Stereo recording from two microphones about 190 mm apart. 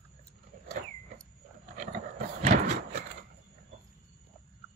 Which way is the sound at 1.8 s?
40° right (ahead or behind).